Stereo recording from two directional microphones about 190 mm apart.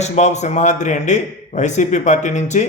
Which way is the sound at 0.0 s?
35° left (ahead or behind).